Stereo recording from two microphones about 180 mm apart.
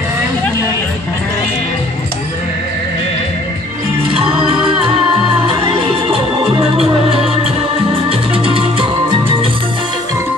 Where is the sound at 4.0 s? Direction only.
30° right (ahead or behind).